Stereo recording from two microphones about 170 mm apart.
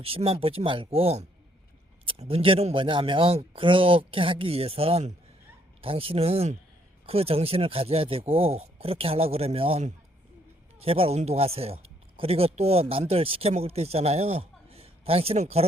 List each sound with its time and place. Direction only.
0.0 s speech: 35° right (ahead or behind)